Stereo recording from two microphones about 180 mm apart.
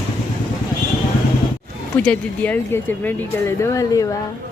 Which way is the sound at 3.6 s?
15° left (ahead or behind).